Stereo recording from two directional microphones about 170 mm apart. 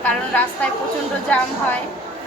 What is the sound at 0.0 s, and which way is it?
Speech, 10° left (ahead or behind).